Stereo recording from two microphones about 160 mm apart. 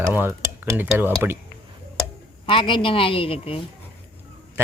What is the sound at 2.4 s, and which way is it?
Speech, 30° left (ahead or behind).